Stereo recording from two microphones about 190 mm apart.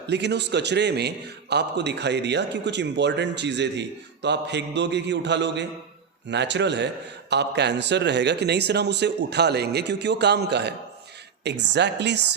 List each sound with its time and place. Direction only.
0.1 s a man's voice: 65° right (ahead or behind)